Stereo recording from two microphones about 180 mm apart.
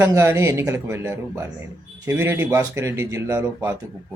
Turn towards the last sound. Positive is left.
turn(degrees=-15)  # may be behind; listen again after turning